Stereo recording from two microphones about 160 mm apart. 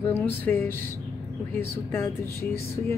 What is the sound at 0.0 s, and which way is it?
Speech, 10° left (ahead or behind).